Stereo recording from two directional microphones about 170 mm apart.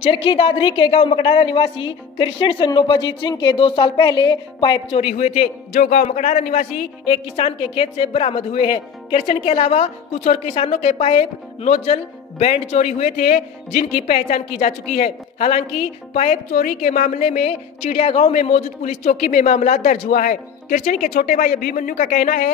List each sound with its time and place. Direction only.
0.0 s a man's voice: 30° left (ahead or behind)
5.7 s a man's voice: 55° left (ahead or behind)
6.0 s a man's voice: 45° left (ahead or behind)
7.1 s a woman's voice: 35° left (ahead or behind); by 22.5 s 55° left (ahead or behind)